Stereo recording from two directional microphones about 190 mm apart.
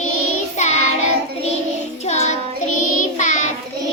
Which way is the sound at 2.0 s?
35° left (ahead or behind).